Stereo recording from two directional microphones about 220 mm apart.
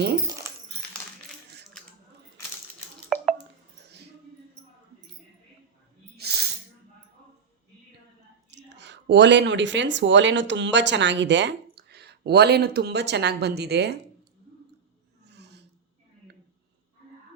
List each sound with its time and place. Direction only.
0.4 s dog: 10° right (ahead or behind)
6.1 s a sound: 45° right (ahead or behind)
8.4 s speech: 50° right (ahead or behind)
15.3 s filing: 50° right (ahead or behind)